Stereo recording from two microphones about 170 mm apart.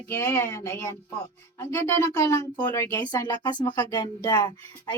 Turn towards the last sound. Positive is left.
turn(degrees=25)  # may be behind; listen again after turning